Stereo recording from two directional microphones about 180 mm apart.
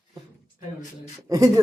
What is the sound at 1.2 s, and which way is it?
Speech, 20° right (ahead or behind).